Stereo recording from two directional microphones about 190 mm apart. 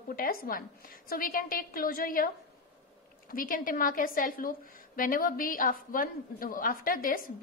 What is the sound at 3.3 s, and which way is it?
A woman's voice, 50° left (ahead or behind).